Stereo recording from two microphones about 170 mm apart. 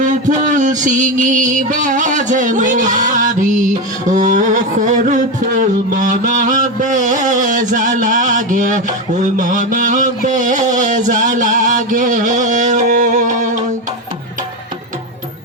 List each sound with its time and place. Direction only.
0.0 s music: 45° right (ahead or behind)